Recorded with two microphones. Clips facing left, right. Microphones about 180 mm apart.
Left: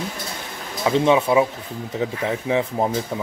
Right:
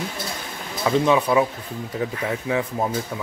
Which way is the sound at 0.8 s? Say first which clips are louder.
Left 2 dB; 25° left (ahead or behind).